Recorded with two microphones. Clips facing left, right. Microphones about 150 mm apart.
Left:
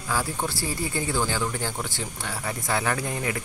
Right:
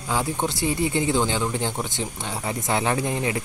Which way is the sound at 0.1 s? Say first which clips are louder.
Right 3 dB; 20° right (ahead or behind).